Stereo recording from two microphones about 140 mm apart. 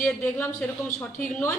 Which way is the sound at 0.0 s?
10° left (ahead or behind).